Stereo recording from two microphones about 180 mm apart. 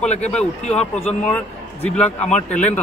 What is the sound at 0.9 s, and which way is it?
Speech, 5° left (ahead or behind).